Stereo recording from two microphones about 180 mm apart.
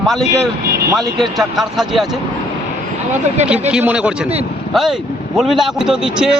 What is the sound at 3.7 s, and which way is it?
Speech, 5° right (ahead or behind).